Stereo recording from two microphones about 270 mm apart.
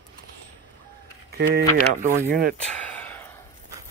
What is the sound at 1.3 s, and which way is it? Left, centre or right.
Speech, right.